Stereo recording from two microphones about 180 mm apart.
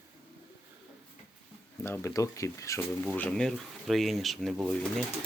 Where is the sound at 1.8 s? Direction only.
15° left (ahead or behind).